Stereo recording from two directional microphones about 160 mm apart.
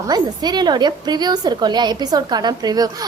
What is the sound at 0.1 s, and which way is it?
A woman's voice, 25° right (ahead or behind).